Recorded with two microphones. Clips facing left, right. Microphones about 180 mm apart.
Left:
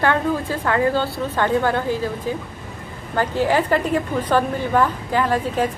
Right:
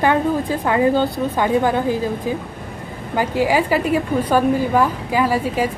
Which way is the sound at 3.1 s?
10° right (ahead or behind).